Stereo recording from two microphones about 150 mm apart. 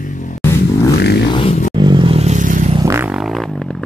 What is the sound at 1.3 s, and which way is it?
Music, 40° left (ahead or behind).